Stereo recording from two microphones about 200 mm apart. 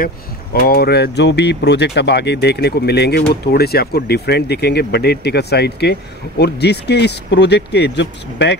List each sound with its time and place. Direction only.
0.0 s speech: 50° left (ahead or behind)